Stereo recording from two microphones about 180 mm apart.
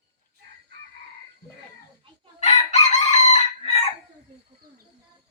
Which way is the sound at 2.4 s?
40° left (ahead or behind).